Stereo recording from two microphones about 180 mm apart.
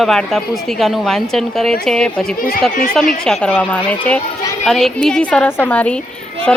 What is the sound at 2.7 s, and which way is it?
Speech, 45° left (ahead or behind).